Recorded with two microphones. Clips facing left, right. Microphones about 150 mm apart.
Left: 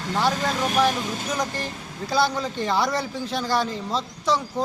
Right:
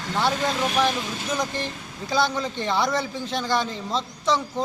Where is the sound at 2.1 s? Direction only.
10° left (ahead or behind).